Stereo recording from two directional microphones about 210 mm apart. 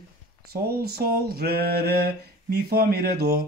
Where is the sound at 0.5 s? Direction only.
45° right (ahead or behind).